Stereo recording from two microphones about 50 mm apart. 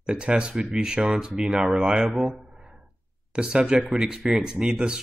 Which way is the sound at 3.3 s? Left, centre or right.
Centre.